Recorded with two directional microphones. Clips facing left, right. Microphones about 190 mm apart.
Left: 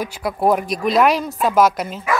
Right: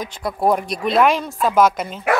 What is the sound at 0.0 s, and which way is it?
Speech, centre (ahead or behind).